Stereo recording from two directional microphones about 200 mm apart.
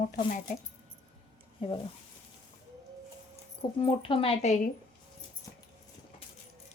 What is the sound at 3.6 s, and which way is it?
Speech, 25° left (ahead or behind).